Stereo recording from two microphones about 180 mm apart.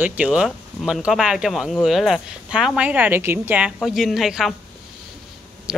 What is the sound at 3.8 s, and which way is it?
Speech, centre (ahead or behind).